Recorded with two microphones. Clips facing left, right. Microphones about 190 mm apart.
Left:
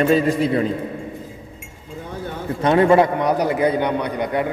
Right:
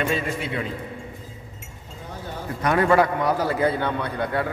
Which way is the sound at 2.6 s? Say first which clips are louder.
Left 5 dB; 25° left (ahead or behind).